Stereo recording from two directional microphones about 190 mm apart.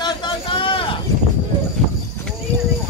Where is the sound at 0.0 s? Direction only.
25° left (ahead or behind).